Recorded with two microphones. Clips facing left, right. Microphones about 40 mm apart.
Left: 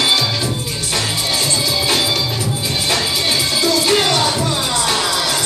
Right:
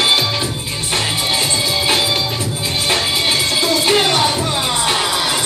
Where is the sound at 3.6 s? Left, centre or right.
Right.